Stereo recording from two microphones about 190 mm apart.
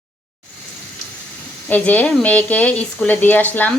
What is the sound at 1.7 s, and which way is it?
Speech, 10° left (ahead or behind).